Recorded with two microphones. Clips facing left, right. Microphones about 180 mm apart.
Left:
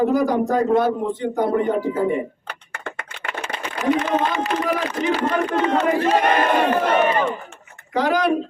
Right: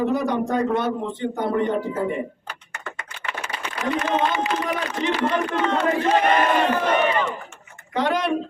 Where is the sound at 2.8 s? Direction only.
55° left (ahead or behind).